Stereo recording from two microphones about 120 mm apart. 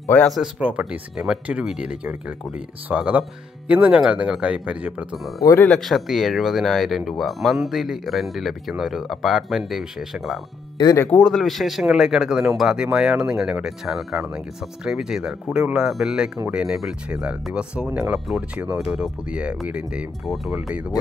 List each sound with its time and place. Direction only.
0.0 s speech: 15° left (ahead or behind)
0.3 s speech: 10° right (ahead or behind)
5.4 s speech: 25° left (ahead or behind)
5.7 s speech: centre (ahead or behind)
10.8 s speech: 30° left (ahead or behind)
11.1 s speech: 5° left (ahead or behind)